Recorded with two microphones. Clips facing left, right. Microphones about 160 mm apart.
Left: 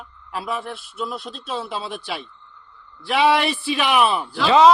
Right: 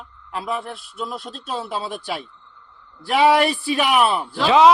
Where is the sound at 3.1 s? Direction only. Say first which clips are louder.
Right 2 dB; 45° right (ahead or behind).